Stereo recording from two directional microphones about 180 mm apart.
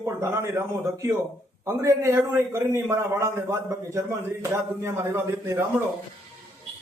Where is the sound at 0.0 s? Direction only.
15° right (ahead or behind).